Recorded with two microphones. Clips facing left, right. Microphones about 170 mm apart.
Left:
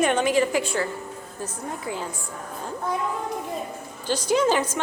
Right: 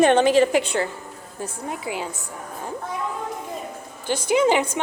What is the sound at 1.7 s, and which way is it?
Speech, 15° right (ahead or behind).